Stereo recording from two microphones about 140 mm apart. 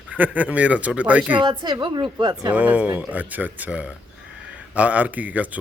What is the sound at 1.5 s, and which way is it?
Speech, 35° right (ahead or behind).